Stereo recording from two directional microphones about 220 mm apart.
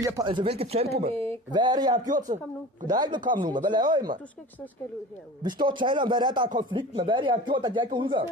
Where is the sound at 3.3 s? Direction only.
20° right (ahead or behind).